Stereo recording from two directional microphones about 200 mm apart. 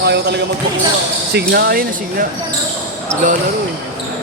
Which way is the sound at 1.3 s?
50° right (ahead or behind).